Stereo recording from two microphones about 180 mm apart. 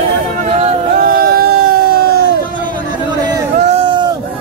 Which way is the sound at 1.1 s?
55° right (ahead or behind).